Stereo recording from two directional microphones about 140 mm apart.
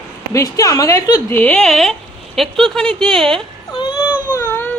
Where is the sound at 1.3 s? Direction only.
10° left (ahead or behind).